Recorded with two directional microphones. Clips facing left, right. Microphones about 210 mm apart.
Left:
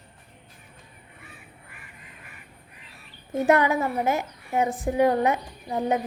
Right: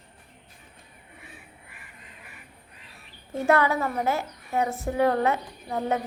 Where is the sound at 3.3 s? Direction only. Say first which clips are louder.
Left 2 dB; 20° left (ahead or behind).